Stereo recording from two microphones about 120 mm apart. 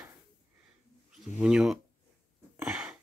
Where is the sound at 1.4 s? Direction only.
5° right (ahead or behind).